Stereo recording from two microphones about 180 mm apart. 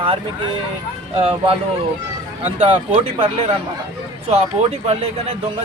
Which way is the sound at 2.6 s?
30° right (ahead or behind).